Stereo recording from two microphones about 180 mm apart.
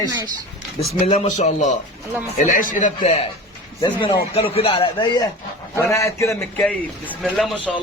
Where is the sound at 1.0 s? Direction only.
35° left (ahead or behind).